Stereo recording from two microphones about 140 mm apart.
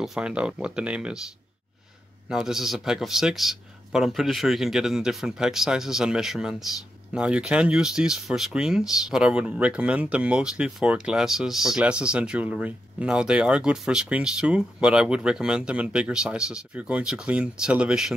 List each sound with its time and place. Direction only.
0.0 s speech: 5° right (ahead or behind)
2.2 s a man's voice: 5° right (ahead or behind)